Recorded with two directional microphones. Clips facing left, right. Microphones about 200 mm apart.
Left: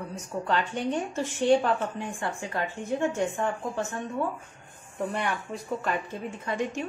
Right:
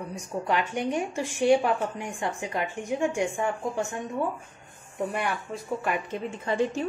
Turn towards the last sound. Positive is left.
turn(degrees=-30)  # may be behind; listen again after turning